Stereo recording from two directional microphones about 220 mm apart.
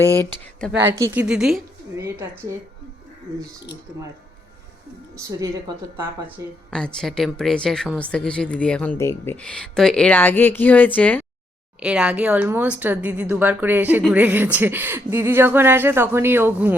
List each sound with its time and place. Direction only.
0.8 s speech: 10° right (ahead or behind)
2.0 s speech: 15° right (ahead or behind)
5.3 s speech: 15° right (ahead or behind)
6.7 s a woman's voice: 5° left (ahead or behind)
11.8 s speech: 5° right (ahead or behind)